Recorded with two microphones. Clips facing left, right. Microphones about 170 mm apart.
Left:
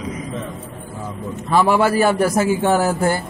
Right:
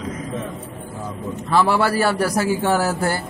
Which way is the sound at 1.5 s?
15° left (ahead or behind).